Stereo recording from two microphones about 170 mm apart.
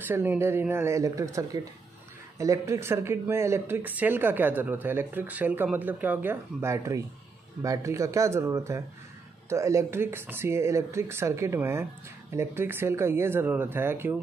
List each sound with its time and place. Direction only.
0.1 s speech: 15° right (ahead or behind)